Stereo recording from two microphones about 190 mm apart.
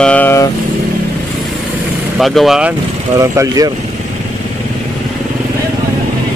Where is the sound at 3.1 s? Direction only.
20° right (ahead or behind).